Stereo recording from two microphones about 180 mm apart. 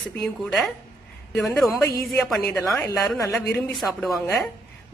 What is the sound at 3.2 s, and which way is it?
Speech, 15° left (ahead or behind).